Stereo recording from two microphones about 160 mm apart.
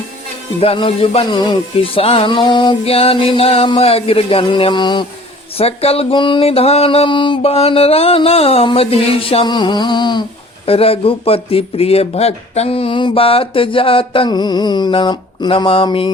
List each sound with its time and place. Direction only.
0.6 s speech: 35° left (ahead or behind)